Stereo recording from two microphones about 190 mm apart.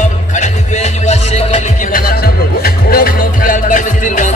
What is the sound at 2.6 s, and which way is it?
Music, 50° left (ahead or behind).